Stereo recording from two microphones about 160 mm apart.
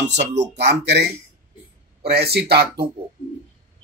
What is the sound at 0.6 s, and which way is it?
Speech, 90° right.